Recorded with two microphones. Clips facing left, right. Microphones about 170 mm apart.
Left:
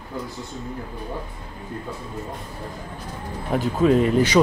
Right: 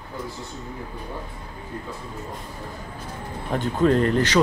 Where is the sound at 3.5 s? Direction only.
5° left (ahead or behind).